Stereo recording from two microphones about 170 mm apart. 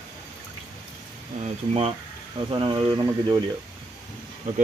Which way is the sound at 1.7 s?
35° right (ahead or behind).